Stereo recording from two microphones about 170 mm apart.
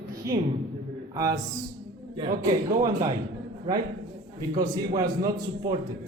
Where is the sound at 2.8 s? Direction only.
20° right (ahead or behind).